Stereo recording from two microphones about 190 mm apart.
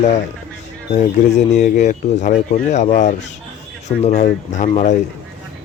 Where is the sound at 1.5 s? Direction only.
40° left (ahead or behind).